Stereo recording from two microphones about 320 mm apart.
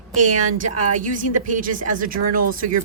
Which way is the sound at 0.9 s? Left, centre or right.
Right.